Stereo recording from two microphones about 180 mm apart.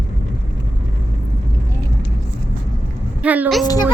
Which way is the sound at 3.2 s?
10° right (ahead or behind).